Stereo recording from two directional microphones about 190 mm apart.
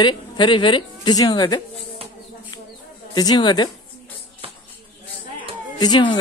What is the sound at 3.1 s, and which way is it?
Speech, 20° left (ahead or behind).